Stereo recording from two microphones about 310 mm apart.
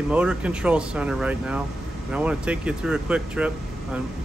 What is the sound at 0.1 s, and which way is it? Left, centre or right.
Speech, centre.